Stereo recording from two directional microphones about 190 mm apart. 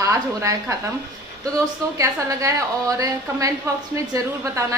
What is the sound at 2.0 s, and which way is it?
A woman's voice, 15° right (ahead or behind).